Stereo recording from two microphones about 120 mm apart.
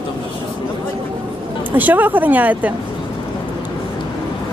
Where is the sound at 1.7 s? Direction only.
15° right (ahead or behind).